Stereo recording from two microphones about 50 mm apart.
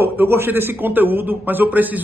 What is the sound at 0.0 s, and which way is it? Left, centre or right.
A man's voice, right.